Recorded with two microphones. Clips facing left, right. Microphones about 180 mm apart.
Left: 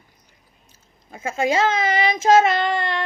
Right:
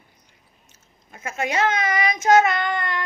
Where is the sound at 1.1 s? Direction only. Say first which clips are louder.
Left 5 dB; 30° left (ahead or behind).